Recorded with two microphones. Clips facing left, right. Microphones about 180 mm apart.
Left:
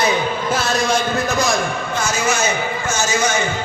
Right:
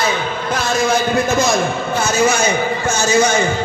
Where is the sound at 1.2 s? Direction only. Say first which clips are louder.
Right 3 dB; 20° right (ahead or behind).